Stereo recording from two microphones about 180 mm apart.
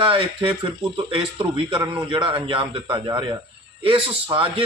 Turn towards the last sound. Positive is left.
turn(degrees=-30)  # may be behind; listen again after turning